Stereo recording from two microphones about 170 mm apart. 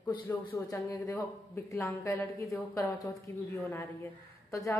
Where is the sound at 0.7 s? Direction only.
20° left (ahead or behind).